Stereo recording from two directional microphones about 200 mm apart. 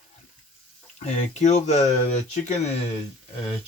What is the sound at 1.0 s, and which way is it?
Speech, 35° left (ahead or behind).